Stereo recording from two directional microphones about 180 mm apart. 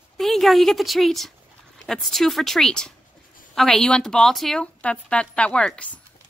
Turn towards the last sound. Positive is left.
turn(degrees=5)  # may be behind; listen again after turning